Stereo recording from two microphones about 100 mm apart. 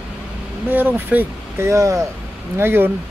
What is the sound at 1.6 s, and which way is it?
Speech, 30° right (ahead or behind).